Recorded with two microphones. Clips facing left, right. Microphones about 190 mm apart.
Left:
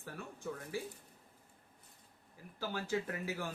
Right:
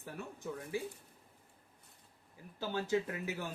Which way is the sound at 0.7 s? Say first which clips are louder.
Right 4 dB; 20° right (ahead or behind).